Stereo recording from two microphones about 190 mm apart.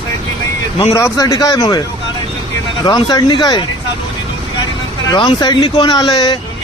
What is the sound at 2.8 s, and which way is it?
Speech, 20° left (ahead or behind).